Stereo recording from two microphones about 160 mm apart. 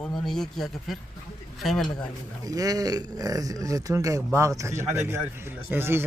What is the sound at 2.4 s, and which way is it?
Speech, 20° right (ahead or behind).